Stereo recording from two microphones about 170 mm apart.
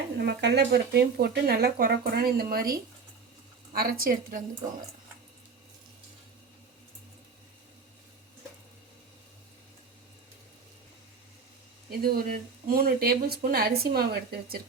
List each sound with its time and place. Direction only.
0.2 s speech: 75° right (ahead or behind); by 2.6 s 60° right (ahead or behind)
3.8 s speech: 60° right (ahead or behind)
11.9 s speech: 60° right (ahead or behind)